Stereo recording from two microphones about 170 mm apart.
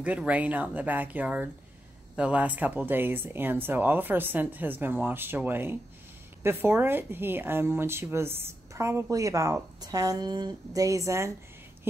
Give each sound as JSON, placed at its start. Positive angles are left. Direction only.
{"t": 0.0, "sound": "a woman's voice", "side_deg": -10}